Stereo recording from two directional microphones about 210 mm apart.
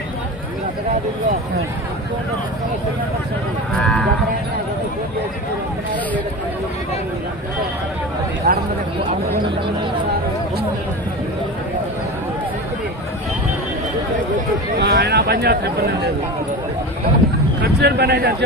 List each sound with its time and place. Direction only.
3.8 s speech: 5° left (ahead or behind)
8.4 s speech: 35° right (ahead or behind)
14.8 s speech: 50° right (ahead or behind)
17.7 s speech: 50° right (ahead or behind)